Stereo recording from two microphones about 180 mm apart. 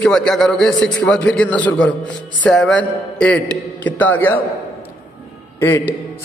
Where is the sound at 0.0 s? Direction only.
5° left (ahead or behind).